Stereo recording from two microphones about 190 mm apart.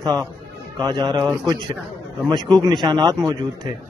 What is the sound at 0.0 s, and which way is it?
A man's voice, 20° right (ahead or behind).